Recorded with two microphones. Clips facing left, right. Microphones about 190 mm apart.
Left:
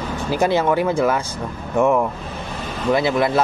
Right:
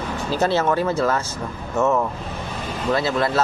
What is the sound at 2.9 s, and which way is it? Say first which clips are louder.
Speech: left 3 dB; 15° left (ahead or behind).